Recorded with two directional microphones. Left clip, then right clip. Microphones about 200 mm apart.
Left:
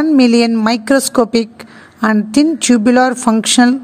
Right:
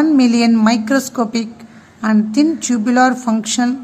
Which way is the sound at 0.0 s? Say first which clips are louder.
Left 2 dB; 40° left (ahead or behind).